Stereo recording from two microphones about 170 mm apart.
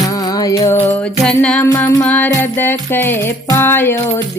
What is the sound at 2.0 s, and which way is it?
Music, 10° left (ahead or behind).